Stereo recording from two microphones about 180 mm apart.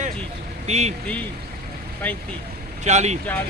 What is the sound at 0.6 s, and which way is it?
Speech, 35° right (ahead or behind).